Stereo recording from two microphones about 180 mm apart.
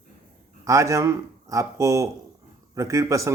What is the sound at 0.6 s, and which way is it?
Speech, 15° right (ahead or behind).